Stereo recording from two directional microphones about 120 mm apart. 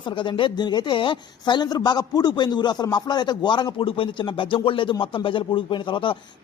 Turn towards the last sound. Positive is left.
turn(degrees=45)  # may be behind; listen again after turning